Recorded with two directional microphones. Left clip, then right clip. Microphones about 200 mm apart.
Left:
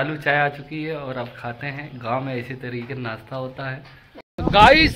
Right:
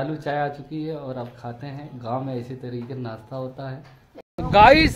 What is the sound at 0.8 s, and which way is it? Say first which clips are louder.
Speech: left 4 dB; 20° left (ahead or behind).